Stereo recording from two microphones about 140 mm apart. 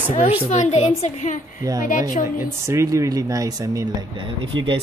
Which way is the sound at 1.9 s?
70° left (ahead or behind).